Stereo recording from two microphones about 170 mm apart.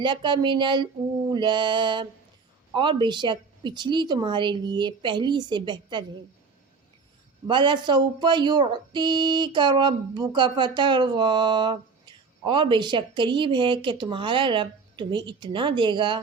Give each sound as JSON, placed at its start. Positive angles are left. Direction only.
{"t": 0.0, "sound": "speech", "side_deg": -25}
{"t": 7.4, "sound": "speech", "side_deg": -30}